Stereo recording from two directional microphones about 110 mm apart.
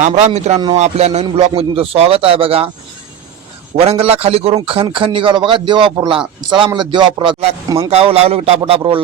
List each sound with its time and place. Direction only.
0.0 s speech: 80° right
0.8 s music: 80° right
1.4 s speech: 60° right (ahead or behind)
3.8 s a man's voice: 60° right (ahead or behind)
7.9 s speech: 65° right (ahead or behind)